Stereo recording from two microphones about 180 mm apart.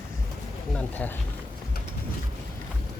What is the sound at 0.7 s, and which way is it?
Speech, 10° left (ahead or behind).